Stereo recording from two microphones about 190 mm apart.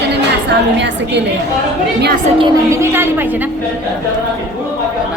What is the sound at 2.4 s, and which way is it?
Speech, 15° right (ahead or behind).